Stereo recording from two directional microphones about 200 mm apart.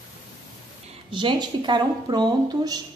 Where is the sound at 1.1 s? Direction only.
25° right (ahead or behind).